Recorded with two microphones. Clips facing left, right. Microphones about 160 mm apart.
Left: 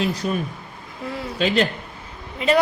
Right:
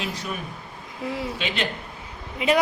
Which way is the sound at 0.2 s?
35° left (ahead or behind).